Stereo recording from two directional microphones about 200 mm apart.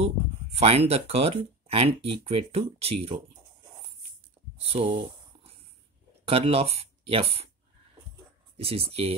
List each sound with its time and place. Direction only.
0.6 s speech: 30° right (ahead or behind)
4.6 s speech: 30° right (ahead or behind)
6.2 s speech: 30° right (ahead or behind)
8.5 s speech: 30° right (ahead or behind)